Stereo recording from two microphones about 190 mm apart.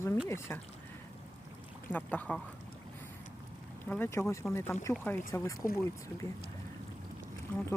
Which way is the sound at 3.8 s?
10° left (ahead or behind).